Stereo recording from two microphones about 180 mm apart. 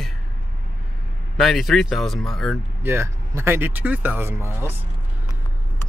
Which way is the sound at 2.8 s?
15° right (ahead or behind).